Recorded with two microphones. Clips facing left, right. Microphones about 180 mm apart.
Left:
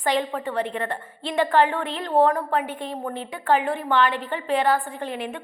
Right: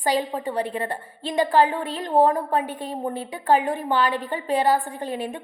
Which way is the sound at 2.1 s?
15° right (ahead or behind).